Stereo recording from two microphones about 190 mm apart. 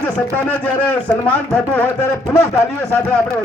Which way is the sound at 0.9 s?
5° left (ahead or behind).